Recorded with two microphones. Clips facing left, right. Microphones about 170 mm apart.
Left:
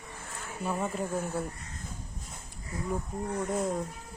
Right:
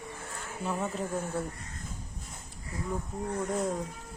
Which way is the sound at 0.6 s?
10° left (ahead or behind).